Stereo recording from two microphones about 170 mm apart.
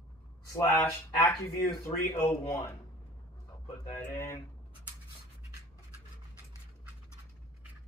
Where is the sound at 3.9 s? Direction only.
20° left (ahead or behind).